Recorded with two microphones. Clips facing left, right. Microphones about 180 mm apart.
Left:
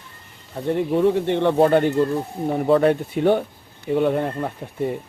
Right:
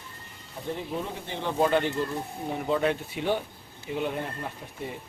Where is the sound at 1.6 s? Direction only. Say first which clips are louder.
Left 4 dB; 50° left (ahead or behind).